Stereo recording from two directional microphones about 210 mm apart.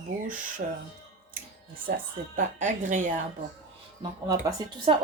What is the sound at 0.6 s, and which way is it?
Speech, 40° right (ahead or behind).